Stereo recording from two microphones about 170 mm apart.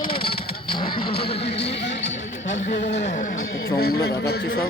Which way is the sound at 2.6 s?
90° left.